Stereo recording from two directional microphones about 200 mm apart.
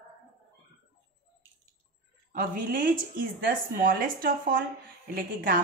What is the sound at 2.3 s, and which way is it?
Speech, 45° right (ahead or behind).